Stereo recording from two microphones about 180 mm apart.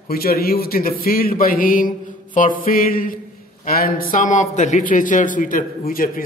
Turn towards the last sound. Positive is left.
turn(degrees=50)  # may be behind; listen again after turning